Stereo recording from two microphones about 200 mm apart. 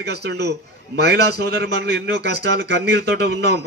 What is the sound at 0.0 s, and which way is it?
A man's voice, 55° right (ahead or behind).